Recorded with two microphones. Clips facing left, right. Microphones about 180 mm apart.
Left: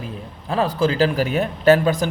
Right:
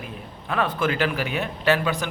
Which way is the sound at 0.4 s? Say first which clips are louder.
Left 4 dB; 30° left (ahead or behind).